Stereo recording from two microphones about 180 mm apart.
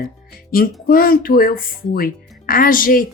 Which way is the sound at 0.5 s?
55° left (ahead or behind).